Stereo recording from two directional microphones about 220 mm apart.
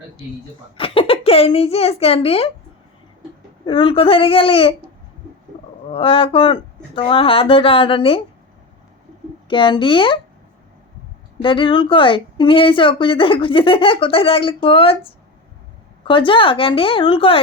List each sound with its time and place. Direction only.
0.8 s a child's voice: 25° left (ahead or behind)
3.7 s a woman's voice: 25° left (ahead or behind)
5.9 s a woman's voice: 25° left (ahead or behind)
9.5 s a woman's voice: 20° left (ahead or behind)
11.4 s a woman's voice: 20° left (ahead or behind)
16.0 s a woman's voice: 25° left (ahead or behind)